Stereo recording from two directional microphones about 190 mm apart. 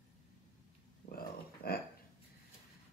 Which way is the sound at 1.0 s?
50° left (ahead or behind).